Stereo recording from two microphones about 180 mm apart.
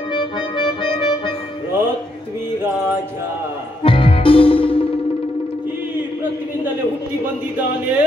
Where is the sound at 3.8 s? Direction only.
30° left (ahead or behind).